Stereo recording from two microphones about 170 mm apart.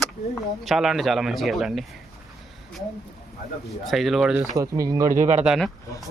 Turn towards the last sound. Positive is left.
turn(degrees=0)  # may be behind; listen again after turning